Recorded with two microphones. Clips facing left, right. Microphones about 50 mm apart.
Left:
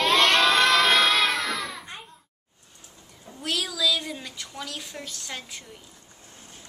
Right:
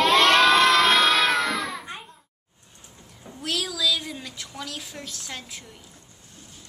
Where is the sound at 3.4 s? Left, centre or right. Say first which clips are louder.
Even; centre.